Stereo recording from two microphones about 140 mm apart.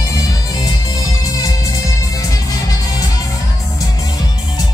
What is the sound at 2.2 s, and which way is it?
Music, 25° left (ahead or behind).